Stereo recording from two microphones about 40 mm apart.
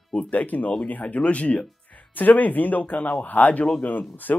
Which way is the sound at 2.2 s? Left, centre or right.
Left.